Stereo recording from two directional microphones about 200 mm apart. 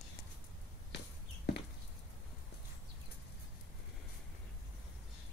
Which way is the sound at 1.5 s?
55° left (ahead or behind).